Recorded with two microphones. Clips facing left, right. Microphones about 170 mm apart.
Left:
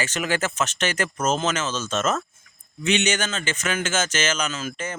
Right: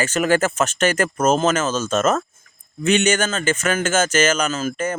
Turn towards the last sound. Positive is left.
turn(degrees=-50)  # may be behind; listen again after turning